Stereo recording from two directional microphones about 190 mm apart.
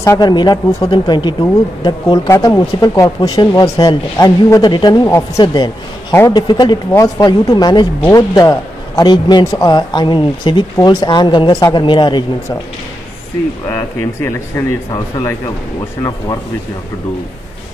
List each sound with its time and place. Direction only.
0.0 s a man's voice: 20° left (ahead or behind)
14.9 s a man's voice: 20° left (ahead or behind)